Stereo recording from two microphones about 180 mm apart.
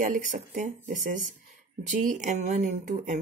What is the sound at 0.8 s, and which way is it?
Speech, 45° right (ahead or behind).